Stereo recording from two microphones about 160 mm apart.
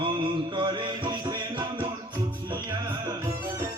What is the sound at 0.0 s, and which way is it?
Music, 30° right (ahead or behind).